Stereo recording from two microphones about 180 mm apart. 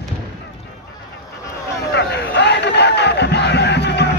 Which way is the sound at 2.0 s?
70° left (ahead or behind).